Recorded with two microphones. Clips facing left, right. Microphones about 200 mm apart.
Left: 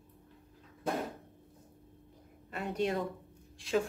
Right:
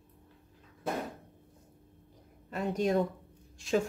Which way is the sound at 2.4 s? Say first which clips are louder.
Right 3 dB; 40° right (ahead or behind).